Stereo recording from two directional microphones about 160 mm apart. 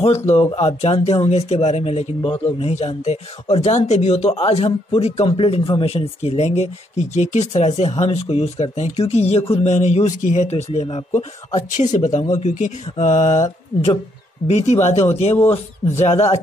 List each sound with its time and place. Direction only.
0.3 s speech: 40° left (ahead or behind)
14.5 s speech: 45° left (ahead or behind)